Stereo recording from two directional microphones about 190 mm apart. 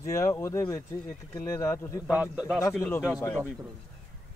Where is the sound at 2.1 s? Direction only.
5° right (ahead or behind).